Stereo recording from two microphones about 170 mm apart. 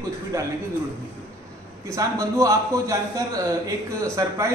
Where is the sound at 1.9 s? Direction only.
20° right (ahead or behind).